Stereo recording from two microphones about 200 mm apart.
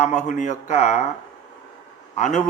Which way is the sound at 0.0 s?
35° left (ahead or behind).